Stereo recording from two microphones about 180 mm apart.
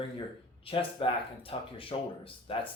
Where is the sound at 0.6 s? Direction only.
30° left (ahead or behind).